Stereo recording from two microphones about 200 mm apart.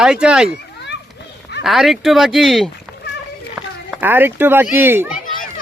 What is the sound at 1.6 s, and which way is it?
Speech, centre (ahead or behind).